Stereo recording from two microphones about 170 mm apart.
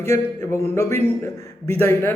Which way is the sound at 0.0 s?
15° left (ahead or behind).